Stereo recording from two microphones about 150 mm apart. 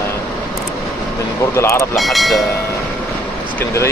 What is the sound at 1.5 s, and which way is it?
Speech, 20° left (ahead or behind).